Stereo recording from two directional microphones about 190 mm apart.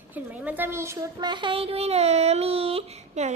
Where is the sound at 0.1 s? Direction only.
10° right (ahead or behind).